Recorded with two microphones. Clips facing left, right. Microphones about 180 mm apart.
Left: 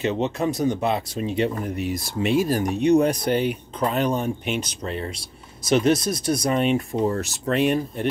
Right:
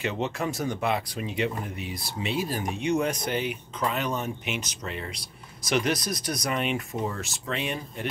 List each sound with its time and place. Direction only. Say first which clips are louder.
0.0 s speech: left 6 dB; 20° left (ahead or behind)
1.8 s speech: left 9 dB; 45° left (ahead or behind)